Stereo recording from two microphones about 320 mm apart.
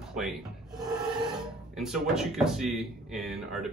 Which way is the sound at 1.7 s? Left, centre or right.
Centre.